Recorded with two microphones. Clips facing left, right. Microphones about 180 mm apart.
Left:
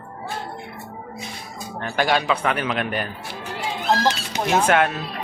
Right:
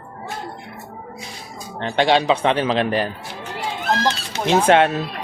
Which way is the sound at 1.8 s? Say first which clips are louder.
Right 4 dB; 25° right (ahead or behind).